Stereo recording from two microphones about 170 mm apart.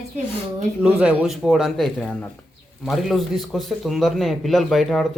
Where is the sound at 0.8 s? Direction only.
10° right (ahead or behind).